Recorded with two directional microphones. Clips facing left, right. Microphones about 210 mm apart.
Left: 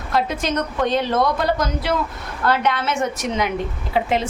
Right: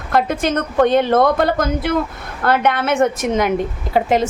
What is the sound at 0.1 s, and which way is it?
A woman's voice, 55° right (ahead or behind).